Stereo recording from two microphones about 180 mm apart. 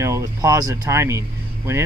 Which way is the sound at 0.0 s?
15° right (ahead or behind).